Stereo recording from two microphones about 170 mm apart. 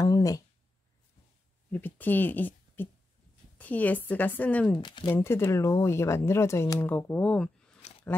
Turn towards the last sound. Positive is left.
turn(degrees=40)  # may be behind; listen again after turning